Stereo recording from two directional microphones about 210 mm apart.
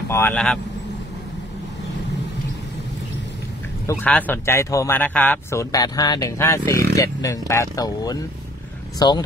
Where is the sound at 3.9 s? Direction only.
5° left (ahead or behind).